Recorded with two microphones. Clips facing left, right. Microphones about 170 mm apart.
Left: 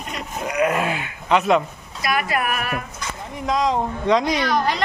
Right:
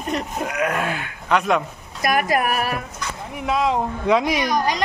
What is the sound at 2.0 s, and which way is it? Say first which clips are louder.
Speech: right 3 dB; 45° right (ahead or behind).